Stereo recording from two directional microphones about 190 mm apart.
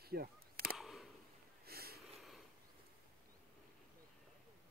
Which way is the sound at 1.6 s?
55° right (ahead or behind).